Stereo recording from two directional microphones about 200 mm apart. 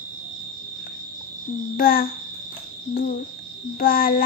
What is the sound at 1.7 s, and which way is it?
Speech, 45° left (ahead or behind).